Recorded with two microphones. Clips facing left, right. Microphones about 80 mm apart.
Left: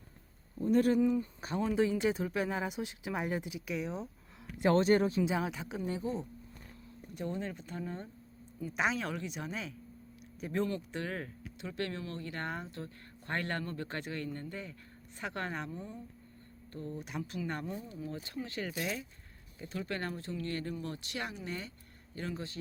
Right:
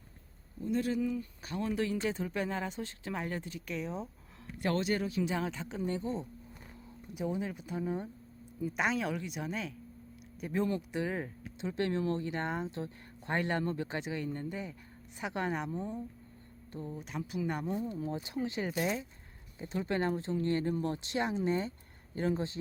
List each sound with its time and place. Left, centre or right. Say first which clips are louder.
0.6 s speech: left 5 dB; left; by 4.1 s centre
4.5 s speech: left 5 dB; left
4.8 s speech: left 5 dB; left
5.2 s speech: left 1 dB; centre
7.1 s speech: right 3 dB; centre
8.6 s speech: right 1 dB; centre; by 16.0 s right
16.7 s speech: even; centre
17.0 s speech: right 3 dB; centre
17.4 s speech: right 4 dB; centre
17.9 s speech: right 4 dB; right